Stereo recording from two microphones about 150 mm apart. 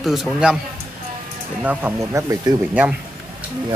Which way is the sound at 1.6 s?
15° right (ahead or behind).